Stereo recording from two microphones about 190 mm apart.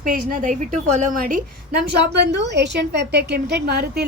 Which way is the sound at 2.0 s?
60° right (ahead or behind).